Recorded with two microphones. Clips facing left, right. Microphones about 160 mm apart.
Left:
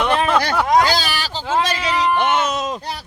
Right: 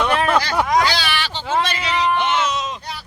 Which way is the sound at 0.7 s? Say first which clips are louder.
Left 4 dB; 40° left (ahead or behind).